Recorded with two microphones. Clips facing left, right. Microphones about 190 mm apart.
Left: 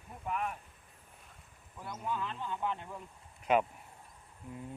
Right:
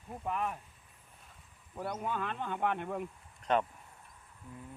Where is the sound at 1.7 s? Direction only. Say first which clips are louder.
Right 2 dB; 55° right (ahead or behind).